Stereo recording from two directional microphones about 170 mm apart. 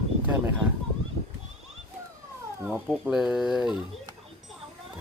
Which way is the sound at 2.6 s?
10° right (ahead or behind).